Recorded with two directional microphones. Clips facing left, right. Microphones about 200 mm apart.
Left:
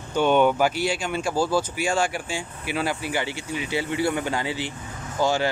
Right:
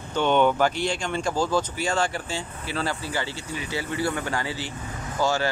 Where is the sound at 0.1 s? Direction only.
10° left (ahead or behind).